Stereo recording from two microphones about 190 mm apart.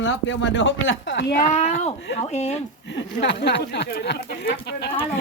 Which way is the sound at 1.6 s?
35° left (ahead or behind).